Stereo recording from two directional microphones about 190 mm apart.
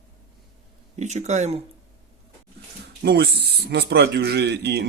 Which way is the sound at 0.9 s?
40° right (ahead or behind).